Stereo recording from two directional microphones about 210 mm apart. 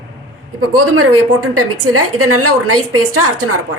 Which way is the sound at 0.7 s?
90° right.